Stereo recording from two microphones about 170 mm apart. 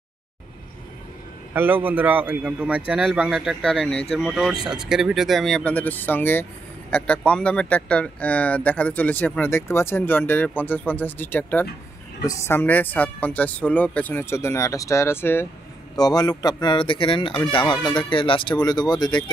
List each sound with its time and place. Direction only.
1.5 s a man's voice: 10° right (ahead or behind); by 19.3 s 25° left (ahead or behind)